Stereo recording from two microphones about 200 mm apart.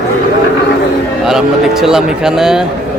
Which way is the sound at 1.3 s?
Centre (ahead or behind).